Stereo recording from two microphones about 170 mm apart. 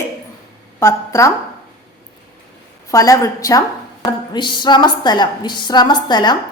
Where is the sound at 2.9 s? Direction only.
20° left (ahead or behind).